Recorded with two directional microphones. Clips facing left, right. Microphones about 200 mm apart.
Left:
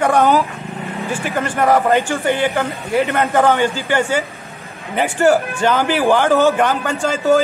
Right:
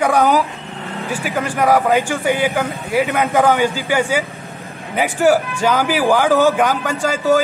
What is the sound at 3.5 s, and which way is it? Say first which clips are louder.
Speech: even; 15° right (ahead or behind).